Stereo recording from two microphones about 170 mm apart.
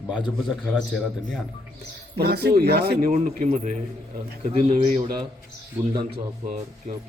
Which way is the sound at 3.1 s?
50° right (ahead or behind).